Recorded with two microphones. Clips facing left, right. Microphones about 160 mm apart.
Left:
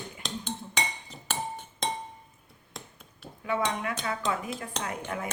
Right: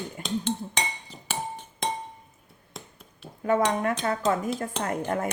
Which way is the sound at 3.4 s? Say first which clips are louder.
Right 6 dB; 45° right (ahead or behind).